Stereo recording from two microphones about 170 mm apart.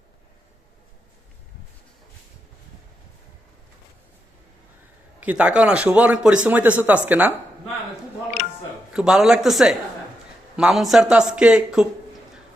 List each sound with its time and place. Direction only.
5.2 s speech: 5° right (ahead or behind)
8.9 s a man's voice: 5° right (ahead or behind)